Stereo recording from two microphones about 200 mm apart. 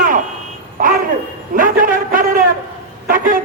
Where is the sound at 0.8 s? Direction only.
45° right (ahead or behind).